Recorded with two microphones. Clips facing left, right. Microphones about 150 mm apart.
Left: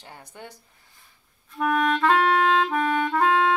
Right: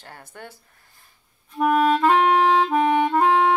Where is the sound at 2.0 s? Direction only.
15° right (ahead or behind).